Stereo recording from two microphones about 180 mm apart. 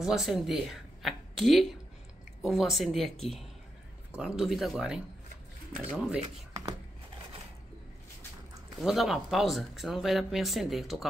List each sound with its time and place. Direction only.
0.0 s speech: centre (ahead or behind)
8.7 s speech: centre (ahead or behind)